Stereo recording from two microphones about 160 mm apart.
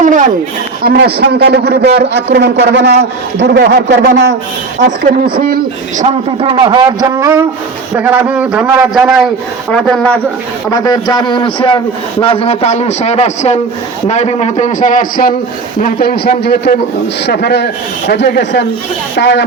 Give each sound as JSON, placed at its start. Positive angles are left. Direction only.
{"t": 0.0, "sound": "a sound", "side_deg": -55}
{"t": 0.8, "sound": "a man's voice", "side_deg": -75}
{"t": 6.4, "sound": "a man's voice", "side_deg": -30}
{"t": 10.7, "sound": "a man's voice", "side_deg": 25}
{"t": 15.8, "sound": "speech", "side_deg": 70}